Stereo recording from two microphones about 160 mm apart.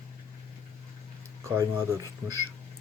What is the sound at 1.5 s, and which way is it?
Speech, 15° right (ahead or behind).